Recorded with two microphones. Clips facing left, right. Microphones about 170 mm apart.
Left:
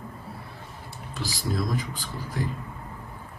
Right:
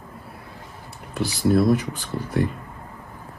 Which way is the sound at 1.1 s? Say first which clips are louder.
Right 11 dB; 65° right (ahead or behind).